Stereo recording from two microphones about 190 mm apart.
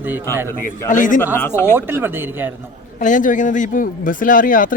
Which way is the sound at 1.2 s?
10° left (ahead or behind).